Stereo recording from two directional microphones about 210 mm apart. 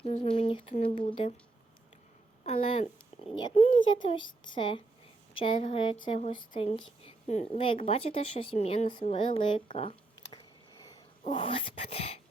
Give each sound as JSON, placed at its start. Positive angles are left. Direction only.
{"t": 0.0, "sound": "speech", "side_deg": 30}
{"t": 2.4, "sound": "speech", "side_deg": 30}
{"t": 4.0, "sound": "speech", "side_deg": 20}
{"t": 7.0, "sound": "a sound", "side_deg": 30}
{"t": 7.6, "sound": "speech", "side_deg": 25}
{"t": 9.6, "sound": "a sound", "side_deg": 25}
{"t": 10.8, "sound": "speech", "side_deg": 20}